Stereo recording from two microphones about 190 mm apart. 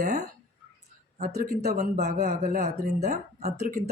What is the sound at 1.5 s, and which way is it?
Speech, 55° right (ahead or behind).